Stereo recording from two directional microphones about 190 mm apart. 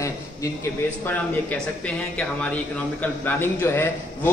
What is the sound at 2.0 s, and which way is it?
A man's voice, 5° left (ahead or behind).